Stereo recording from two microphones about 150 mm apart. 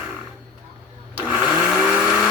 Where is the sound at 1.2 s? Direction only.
10° right (ahead or behind).